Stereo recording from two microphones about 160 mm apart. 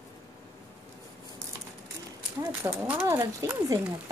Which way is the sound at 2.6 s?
10° right (ahead or behind).